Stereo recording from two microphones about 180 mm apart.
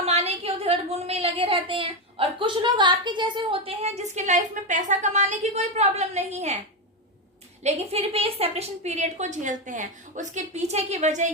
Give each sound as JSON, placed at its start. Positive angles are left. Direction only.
{"t": 0.0, "sound": "a woman's voice", "side_deg": -35}
{"t": 7.6, "sound": "a woman's voice", "side_deg": -35}